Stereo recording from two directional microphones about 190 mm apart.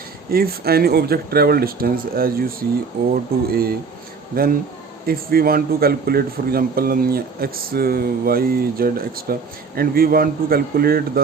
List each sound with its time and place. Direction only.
0.3 s speech: 55° right (ahead or behind)